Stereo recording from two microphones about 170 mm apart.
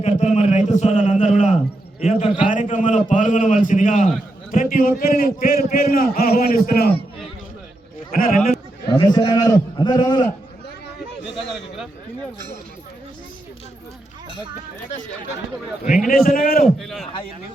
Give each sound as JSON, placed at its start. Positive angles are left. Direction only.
{"t": 0.0, "sound": "a man's voice", "side_deg": 40}
{"t": 8.1, "sound": "a man's voice", "side_deg": 60}
{"t": 8.9, "sound": "a man's voice", "side_deg": 25}
{"t": 11.3, "sound": "a man's voice", "side_deg": 0}
{"t": 16.0, "sound": "a man's voice", "side_deg": 55}
{"t": 16.6, "sound": "a man's voice", "side_deg": 0}